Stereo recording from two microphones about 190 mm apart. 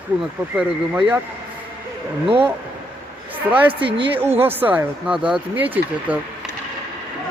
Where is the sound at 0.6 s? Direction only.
10° right (ahead or behind).